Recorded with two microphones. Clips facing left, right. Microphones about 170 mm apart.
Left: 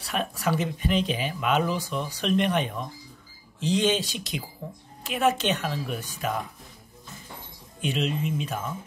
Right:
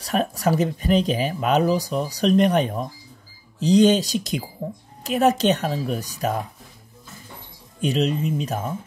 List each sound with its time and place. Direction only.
0.0 s speech: 40° right (ahead or behind)
7.8 s speech: 40° right (ahead or behind)